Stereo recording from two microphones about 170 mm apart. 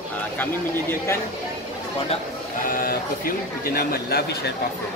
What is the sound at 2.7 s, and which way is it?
Speech, 60° left (ahead or behind).